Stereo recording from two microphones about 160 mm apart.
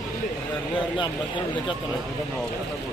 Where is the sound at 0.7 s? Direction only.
30° left (ahead or behind).